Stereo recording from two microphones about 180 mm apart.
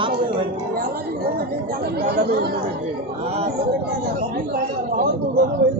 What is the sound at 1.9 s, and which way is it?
Speech, 65° right (ahead or behind).